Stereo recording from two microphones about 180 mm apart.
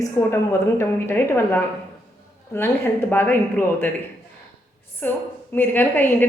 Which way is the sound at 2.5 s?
15° left (ahead or behind).